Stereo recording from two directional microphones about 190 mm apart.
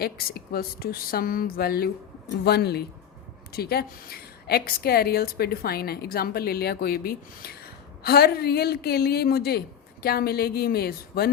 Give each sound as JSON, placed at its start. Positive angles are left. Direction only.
{"t": 0.0, "sound": "a woman's voice", "side_deg": 55}